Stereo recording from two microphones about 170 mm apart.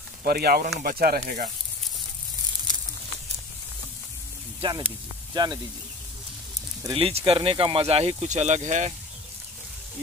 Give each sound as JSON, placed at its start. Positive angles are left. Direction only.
{"t": 0.2, "sound": "speech", "side_deg": -60}
{"t": 4.6, "sound": "speech", "side_deg": -25}
{"t": 6.8, "sound": "speech", "side_deg": -30}